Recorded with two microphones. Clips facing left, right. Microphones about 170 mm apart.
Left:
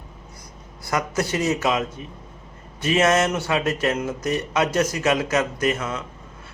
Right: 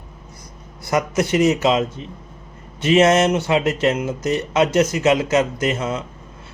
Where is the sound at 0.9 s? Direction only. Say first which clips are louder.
Right 5 dB; 20° right (ahead or behind).